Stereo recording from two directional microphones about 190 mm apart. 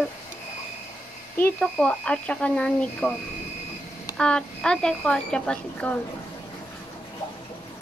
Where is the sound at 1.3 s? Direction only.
5° left (ahead or behind).